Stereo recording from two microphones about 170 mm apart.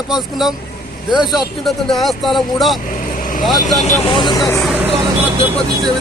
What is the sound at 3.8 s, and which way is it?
Speech, 30° left (ahead or behind).